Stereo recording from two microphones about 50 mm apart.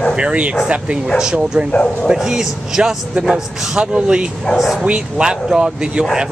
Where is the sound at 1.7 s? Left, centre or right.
Left.